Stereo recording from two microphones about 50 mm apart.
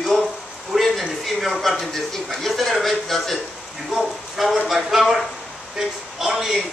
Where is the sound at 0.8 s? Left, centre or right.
Centre.